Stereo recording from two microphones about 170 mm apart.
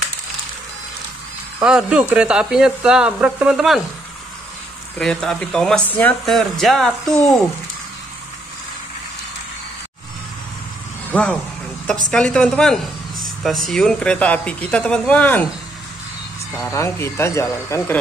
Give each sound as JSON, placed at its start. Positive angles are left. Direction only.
{"t": 1.6, "sound": "speech", "side_deg": -5}
{"t": 4.9, "sound": "speech", "side_deg": 5}
{"t": 11.1, "sound": "speech", "side_deg": 10}
{"t": 16.5, "sound": "speech", "side_deg": 15}